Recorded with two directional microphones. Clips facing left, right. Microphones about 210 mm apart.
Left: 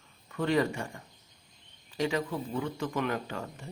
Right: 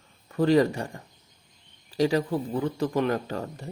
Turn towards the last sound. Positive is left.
turn(degrees=-40)  # may be behind; listen again after turning